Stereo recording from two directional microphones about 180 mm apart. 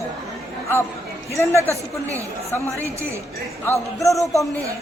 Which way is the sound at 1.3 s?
15° left (ahead or behind).